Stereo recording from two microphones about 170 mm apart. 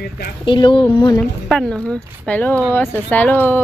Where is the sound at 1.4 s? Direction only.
5° left (ahead or behind).